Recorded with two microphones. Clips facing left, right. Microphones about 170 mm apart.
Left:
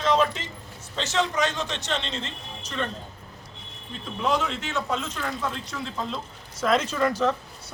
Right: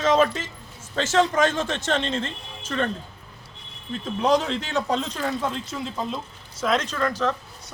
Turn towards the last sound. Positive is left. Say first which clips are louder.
# left 1 dB
turn(degrees=10)  # may be behind; listen again after turning